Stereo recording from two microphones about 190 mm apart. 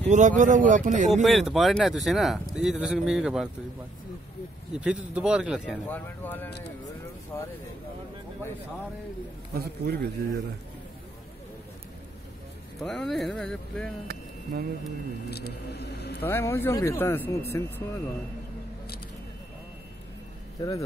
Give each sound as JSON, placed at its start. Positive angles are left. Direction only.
{"t": 0.0, "sound": "a man's voice", "side_deg": -40}
{"t": 1.2, "sound": "speech", "side_deg": 0}
{"t": 4.7, "sound": "speech", "side_deg": -5}
{"t": 5.9, "sound": "speech", "side_deg": 10}
{"t": 9.5, "sound": "a man's voice", "side_deg": -55}
{"t": 12.7, "sound": "speech", "side_deg": 0}
{"t": 15.2, "sound": "speech", "side_deg": 60}
{"t": 16.3, "sound": "speech", "side_deg": 10}